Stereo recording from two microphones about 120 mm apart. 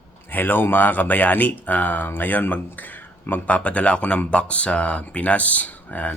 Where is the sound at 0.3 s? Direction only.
15° left (ahead or behind).